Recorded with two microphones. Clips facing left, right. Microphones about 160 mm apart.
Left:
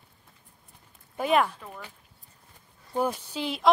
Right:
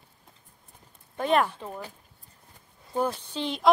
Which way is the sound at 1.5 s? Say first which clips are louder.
Right 5 dB; 25° right (ahead or behind).